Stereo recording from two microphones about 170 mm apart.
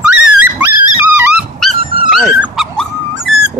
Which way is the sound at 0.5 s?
10° right (ahead or behind).